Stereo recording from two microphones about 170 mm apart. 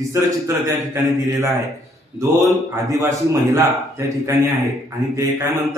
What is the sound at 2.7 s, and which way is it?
A man's voice, 20° right (ahead or behind).